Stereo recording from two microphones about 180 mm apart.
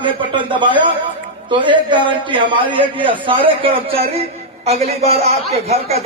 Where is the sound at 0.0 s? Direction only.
25° right (ahead or behind).